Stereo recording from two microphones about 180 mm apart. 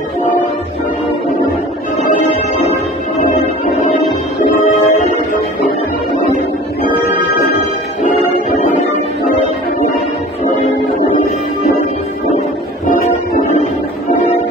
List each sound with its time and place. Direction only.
4.6 s music: 40° left (ahead or behind)